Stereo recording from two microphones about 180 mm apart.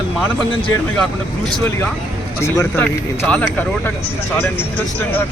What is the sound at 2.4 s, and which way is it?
Speech, 15° left (ahead or behind).